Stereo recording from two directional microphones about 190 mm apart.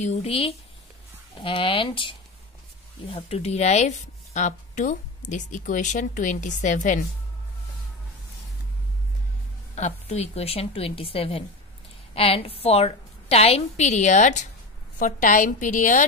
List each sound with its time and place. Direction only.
0.0 s a woman's voice: 35° left (ahead or behind)
9.8 s a woman's voice: 35° left (ahead or behind)